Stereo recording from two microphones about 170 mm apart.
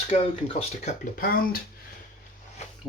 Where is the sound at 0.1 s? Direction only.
35° left (ahead or behind).